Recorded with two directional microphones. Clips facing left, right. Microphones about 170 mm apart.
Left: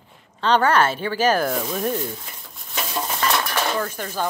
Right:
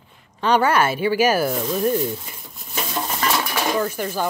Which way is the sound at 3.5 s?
15° right (ahead or behind).